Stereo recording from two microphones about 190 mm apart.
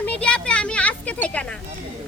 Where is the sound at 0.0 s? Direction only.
5° left (ahead or behind).